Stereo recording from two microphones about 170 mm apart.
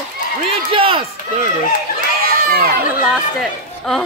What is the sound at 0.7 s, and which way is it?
Speech, 35° right (ahead or behind).